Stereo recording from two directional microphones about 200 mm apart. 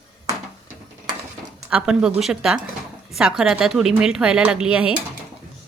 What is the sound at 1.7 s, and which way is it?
A woman's voice, 5° right (ahead or behind).